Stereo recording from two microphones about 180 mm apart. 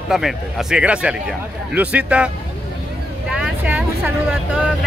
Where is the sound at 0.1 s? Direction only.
Centre (ahead or behind).